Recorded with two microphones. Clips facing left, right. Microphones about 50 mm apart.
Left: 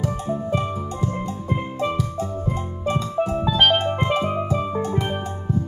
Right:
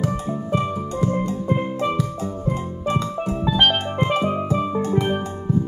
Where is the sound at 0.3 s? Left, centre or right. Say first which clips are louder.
Right 1 dB; centre.